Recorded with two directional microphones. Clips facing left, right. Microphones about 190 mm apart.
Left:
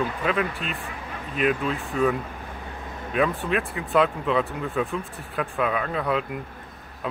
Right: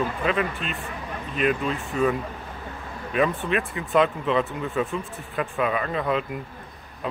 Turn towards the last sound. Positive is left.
turn(degrees=0)  # may be behind; listen again after turning